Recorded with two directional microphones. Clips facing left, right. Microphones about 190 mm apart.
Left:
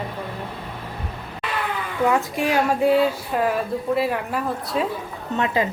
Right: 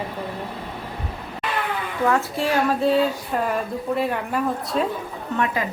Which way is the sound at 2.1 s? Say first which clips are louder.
Even; 15° left (ahead or behind).